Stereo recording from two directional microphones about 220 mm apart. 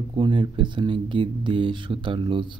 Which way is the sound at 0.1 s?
25° right (ahead or behind).